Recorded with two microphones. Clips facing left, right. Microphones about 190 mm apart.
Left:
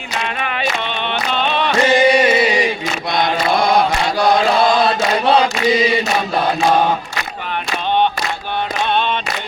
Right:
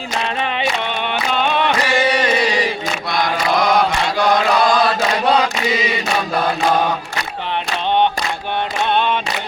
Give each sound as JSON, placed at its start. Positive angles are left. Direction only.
{"t": 0.4, "sound": "a sound", "side_deg": -20}
{"t": 1.3, "sound": "music", "side_deg": -10}
{"t": 1.8, "sound": "music", "side_deg": 20}
{"t": 2.1, "sound": "a sound", "side_deg": 10}
{"t": 3.1, "sound": "mantra", "side_deg": 25}
{"t": 5.3, "sound": "choir", "side_deg": 30}